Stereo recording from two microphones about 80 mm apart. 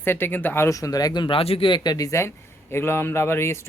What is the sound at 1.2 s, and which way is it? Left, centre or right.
Speech, left.